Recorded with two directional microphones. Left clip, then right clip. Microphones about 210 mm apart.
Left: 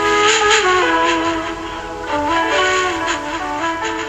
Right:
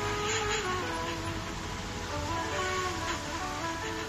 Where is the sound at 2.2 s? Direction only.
45° left (ahead or behind).